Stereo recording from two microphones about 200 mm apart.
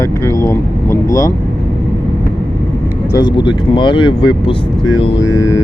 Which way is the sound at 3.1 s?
20° left (ahead or behind).